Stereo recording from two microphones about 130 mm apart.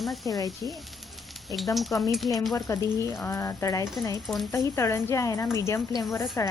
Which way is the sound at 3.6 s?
30° left (ahead or behind).